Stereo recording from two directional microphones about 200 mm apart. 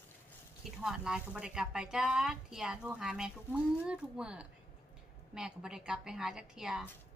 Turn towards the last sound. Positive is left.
turn(degrees=0)  # may be behind; listen again after turning